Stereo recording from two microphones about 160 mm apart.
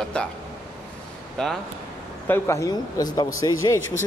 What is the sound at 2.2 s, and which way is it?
A man's voice, 15° left (ahead or behind).